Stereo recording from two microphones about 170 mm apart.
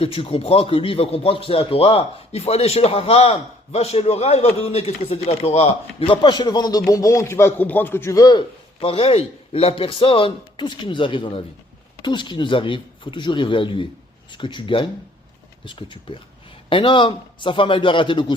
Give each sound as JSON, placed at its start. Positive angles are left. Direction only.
{"t": 0.0, "sound": "speech", "side_deg": 35}